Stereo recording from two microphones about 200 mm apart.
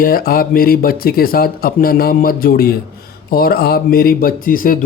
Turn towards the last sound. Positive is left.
turn(degrees=45)  # may be behind; listen again after turning